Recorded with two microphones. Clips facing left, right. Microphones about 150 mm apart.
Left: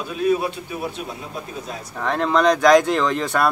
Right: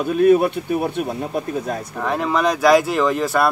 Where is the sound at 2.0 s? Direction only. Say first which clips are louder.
Left 2 dB; 5° right (ahead or behind).